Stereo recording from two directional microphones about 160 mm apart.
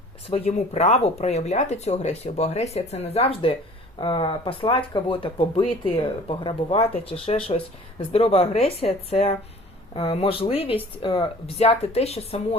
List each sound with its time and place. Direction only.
0.3 s speech: 40° left (ahead or behind)